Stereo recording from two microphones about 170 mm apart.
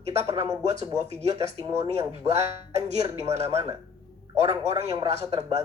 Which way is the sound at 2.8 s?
40° right (ahead or behind).